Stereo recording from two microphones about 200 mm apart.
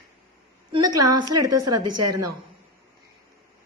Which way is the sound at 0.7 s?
20° right (ahead or behind).